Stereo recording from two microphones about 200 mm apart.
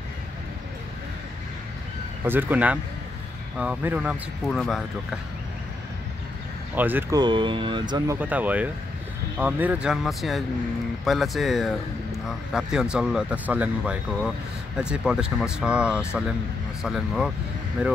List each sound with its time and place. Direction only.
2.2 s speech: 10° right (ahead or behind)
6.7 s speech: 10° right (ahead or behind)
7.2 s speech: 25° right (ahead or behind)
8.2 s speech: 10° right (ahead or behind)